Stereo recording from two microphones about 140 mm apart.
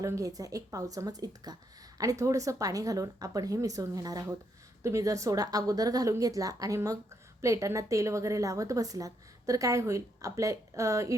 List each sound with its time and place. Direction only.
0.0 s a woman's voice: 25° right (ahead or behind)